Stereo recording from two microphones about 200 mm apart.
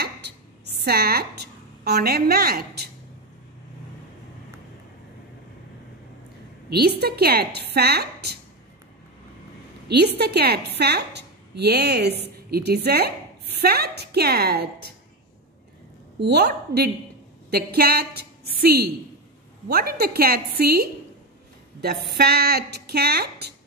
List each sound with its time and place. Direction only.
0.8 s a woman's voice: 50° right (ahead or behind)
6.7 s a woman's voice: 55° right (ahead or behind)
9.8 s a woman's voice: 55° right (ahead or behind)
16.2 s a woman's voice: 55° right (ahead or behind)
22.1 s a woman's voice: 55° right (ahead or behind)